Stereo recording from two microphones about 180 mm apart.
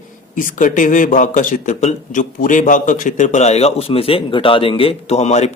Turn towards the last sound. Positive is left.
turn(degrees=40)  # may be behind; listen again after turning